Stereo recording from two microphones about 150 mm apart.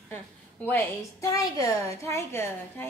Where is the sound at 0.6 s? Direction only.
20° left (ahead or behind).